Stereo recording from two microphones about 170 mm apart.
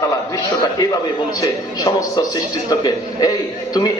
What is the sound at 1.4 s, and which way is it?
A man's voice, 20° left (ahead or behind).